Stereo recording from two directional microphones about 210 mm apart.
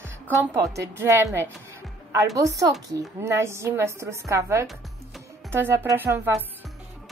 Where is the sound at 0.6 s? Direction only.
15° right (ahead or behind).